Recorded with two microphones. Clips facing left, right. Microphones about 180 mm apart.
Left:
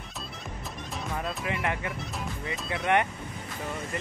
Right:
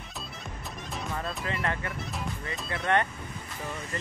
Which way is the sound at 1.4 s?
15° left (ahead or behind).